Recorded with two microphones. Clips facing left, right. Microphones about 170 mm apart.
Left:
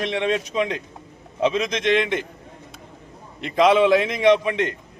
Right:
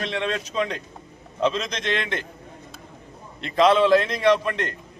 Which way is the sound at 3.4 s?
10° left (ahead or behind).